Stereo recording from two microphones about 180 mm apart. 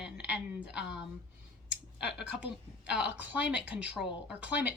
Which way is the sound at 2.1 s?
70° left (ahead or behind).